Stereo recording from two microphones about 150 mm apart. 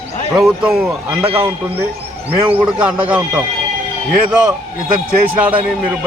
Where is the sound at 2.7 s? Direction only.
10° right (ahead or behind).